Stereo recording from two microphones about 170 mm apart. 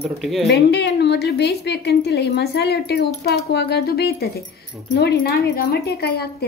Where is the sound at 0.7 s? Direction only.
80° left.